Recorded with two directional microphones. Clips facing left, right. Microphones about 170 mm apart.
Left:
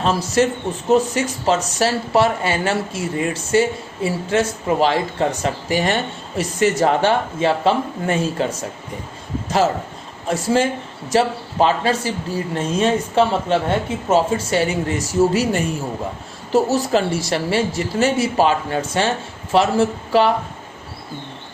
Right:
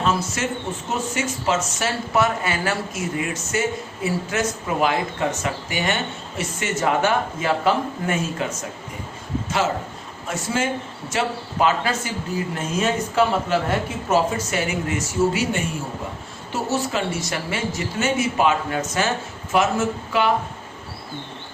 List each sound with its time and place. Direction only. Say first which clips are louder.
0.0 s speech: left 6 dB; 35° left (ahead or behind)
10.2 s speech: left 6 dB; 35° left (ahead or behind)